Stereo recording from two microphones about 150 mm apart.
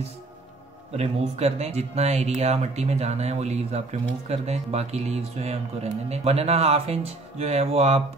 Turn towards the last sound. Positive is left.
turn(degrees=-45)  # may be behind; listen again after turning